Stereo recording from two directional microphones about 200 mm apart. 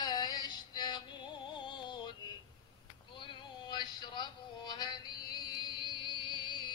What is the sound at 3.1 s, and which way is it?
Synthetic singing, 25° left (ahead or behind).